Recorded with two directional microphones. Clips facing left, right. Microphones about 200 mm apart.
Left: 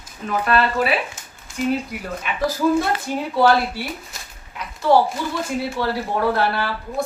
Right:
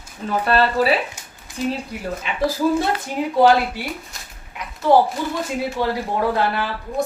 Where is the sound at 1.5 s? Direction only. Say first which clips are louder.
Left 1 dB; 15° right (ahead or behind).